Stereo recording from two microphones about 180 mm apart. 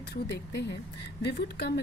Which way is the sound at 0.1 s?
70° left (ahead or behind).